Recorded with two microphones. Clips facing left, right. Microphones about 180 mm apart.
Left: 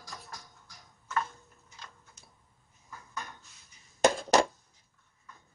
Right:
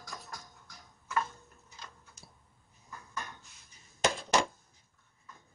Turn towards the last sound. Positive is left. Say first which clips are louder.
# left 5 dB
turn(degrees=45)  # may be behind; listen again after turning